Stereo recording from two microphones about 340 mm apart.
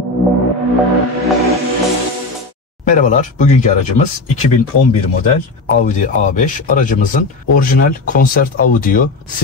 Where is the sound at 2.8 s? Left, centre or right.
Left.